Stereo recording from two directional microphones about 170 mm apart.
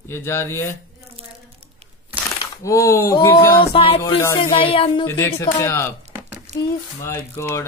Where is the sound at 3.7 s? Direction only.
30° left (ahead or behind).